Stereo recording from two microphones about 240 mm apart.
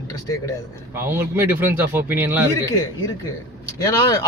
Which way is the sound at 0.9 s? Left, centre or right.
Centre.